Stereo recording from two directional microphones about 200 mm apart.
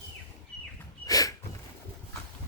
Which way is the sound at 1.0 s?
20° left (ahead or behind).